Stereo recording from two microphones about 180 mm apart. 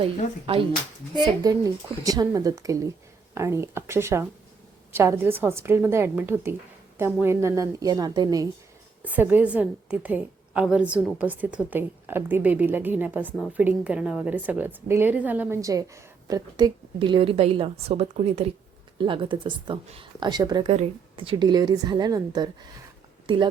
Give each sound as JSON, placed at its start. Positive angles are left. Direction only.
{"t": 0.0, "sound": "speech", "side_deg": -30}
{"t": 1.1, "sound": "a woman's voice", "side_deg": -20}
{"t": 9.0, "sound": "a woman's voice", "side_deg": -10}